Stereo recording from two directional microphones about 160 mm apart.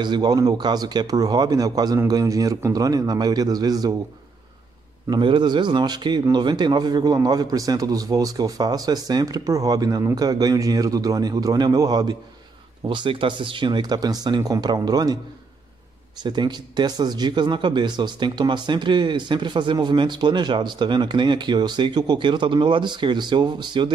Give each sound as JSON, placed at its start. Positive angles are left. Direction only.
{"t": 0.0, "sound": "speech", "side_deg": -25}
{"t": 5.1, "sound": "speech", "side_deg": -30}
{"t": 16.2, "sound": "speech", "side_deg": -25}